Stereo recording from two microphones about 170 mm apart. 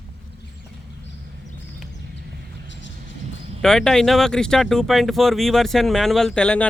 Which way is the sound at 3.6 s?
5° left (ahead or behind).